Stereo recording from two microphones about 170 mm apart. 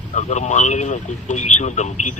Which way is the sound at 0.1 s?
45° left (ahead or behind).